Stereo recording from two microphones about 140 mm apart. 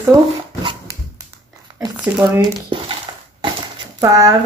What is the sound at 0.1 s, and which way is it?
Speech, 25° right (ahead or behind).